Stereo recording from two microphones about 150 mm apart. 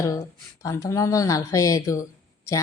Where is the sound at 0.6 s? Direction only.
20° left (ahead or behind).